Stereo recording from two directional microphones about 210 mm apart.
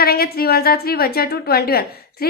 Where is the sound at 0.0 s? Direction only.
45° left (ahead or behind).